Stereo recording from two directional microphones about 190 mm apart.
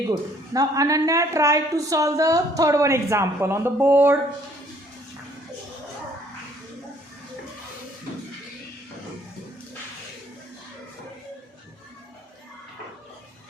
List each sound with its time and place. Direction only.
0.1 s a woman's voice: 20° right (ahead or behind)